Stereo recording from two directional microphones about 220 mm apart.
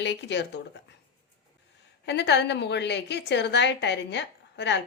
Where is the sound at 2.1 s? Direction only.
50° left (ahead or behind).